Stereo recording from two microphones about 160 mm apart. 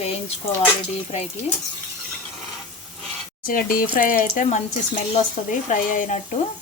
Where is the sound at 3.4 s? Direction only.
60° left (ahead or behind).